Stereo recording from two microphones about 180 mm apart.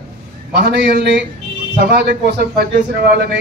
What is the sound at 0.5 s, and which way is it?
A man's voice, 60° right (ahead or behind).